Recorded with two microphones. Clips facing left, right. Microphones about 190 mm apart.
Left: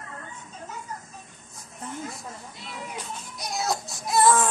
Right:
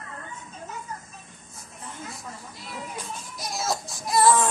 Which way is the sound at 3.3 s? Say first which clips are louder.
Left 1 dB; centre (ahead or behind).